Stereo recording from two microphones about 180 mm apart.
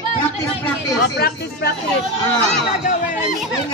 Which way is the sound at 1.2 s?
60° left (ahead or behind).